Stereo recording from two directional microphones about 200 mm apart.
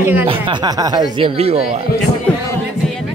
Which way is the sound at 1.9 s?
50° left (ahead or behind).